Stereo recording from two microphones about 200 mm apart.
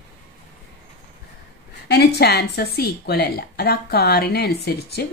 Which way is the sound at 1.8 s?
55° left (ahead or behind).